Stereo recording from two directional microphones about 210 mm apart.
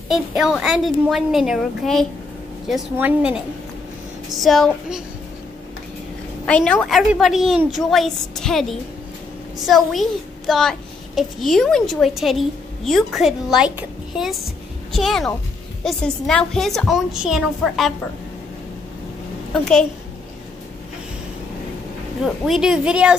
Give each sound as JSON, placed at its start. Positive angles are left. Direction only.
{"t": 0.1, "sound": "a woman's voice", "side_deg": 0}
{"t": 6.4, "sound": "a woman's voice", "side_deg": 5}
{"t": 19.5, "sound": "a woman's voice", "side_deg": 0}
{"t": 22.2, "sound": "a woman's voice", "side_deg": 0}